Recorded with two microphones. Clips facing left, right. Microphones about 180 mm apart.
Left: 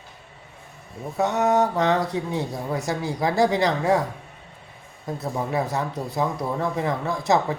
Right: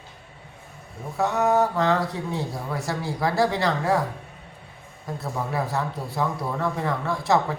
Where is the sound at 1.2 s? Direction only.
20° left (ahead or behind).